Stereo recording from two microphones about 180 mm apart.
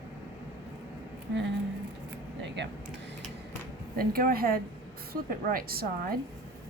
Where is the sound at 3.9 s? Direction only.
55° right (ahead or behind).